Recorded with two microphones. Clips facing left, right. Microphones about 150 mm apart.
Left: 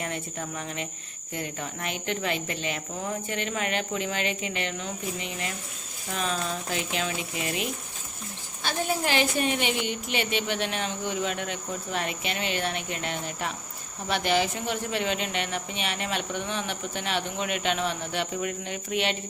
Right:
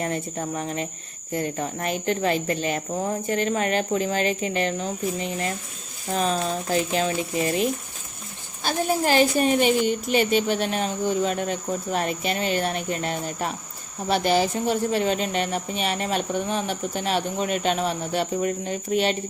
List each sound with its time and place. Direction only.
0.0 s a woman's voice: 40° right (ahead or behind)